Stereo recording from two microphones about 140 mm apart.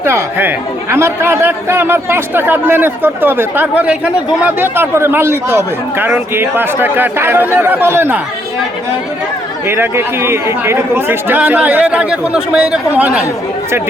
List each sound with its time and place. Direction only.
0.0 s speech: 15° right (ahead or behind)
9.6 s speech: 15° right (ahead or behind)